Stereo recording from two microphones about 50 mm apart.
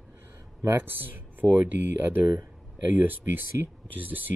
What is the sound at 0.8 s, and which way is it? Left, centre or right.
Speech, right.